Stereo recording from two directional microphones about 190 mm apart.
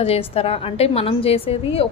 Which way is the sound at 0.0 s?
30° left (ahead or behind).